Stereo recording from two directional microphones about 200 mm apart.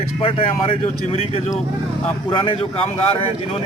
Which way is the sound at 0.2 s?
25° left (ahead or behind).